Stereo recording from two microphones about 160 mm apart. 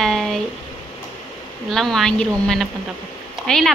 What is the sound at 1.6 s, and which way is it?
A woman's voice, centre (ahead or behind).